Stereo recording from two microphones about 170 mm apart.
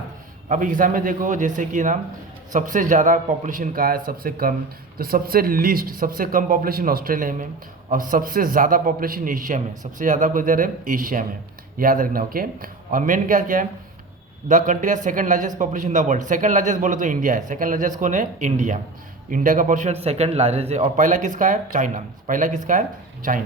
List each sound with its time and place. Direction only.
0.4 s a man's voice: 50° right (ahead or behind)